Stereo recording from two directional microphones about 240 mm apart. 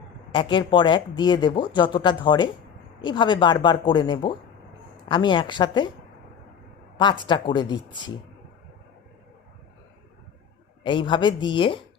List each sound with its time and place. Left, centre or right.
0.3 s speech: centre
6.9 s speech: centre
10.8 s speech: centre